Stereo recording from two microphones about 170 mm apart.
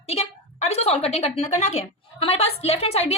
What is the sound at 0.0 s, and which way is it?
A woman's voice, 35° left (ahead or behind).